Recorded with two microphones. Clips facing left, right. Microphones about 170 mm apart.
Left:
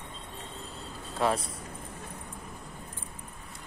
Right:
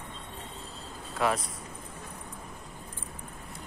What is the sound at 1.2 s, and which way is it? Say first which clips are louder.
Speech: even; 30° left (ahead or behind).